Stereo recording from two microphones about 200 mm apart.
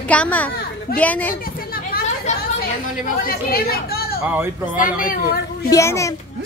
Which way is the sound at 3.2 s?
50° left (ahead or behind).